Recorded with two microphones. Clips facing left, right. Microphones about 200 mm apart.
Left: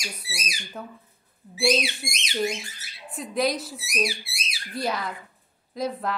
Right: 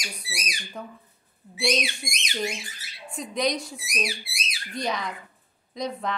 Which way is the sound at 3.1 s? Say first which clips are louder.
Left 1 dB; centre (ahead or behind).